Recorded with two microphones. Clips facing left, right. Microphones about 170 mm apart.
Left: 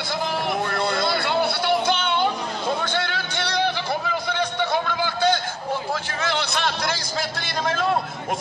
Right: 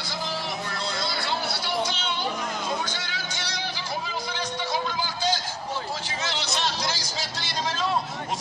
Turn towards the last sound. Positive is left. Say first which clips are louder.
# left 5 dB
turn(degrees=55)  # may be behind; listen again after turning